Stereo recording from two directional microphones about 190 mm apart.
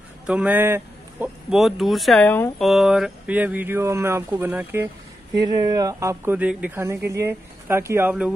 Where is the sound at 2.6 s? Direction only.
Centre (ahead or behind).